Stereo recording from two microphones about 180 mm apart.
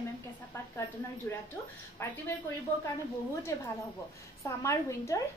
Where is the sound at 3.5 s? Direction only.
15° left (ahead or behind).